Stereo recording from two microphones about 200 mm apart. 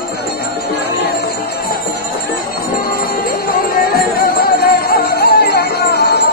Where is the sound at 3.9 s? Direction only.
50° left (ahead or behind).